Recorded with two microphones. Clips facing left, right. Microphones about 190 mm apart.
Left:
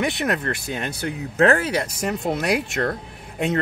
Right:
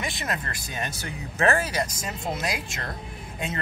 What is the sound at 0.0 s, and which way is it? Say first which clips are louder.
Speech: left 9 dB; 65° left (ahead or behind).